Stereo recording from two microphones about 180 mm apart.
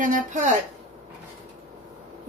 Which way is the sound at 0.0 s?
45° right (ahead or behind).